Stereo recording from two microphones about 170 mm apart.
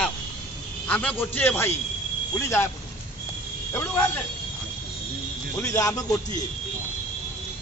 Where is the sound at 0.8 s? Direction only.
10° left (ahead or behind).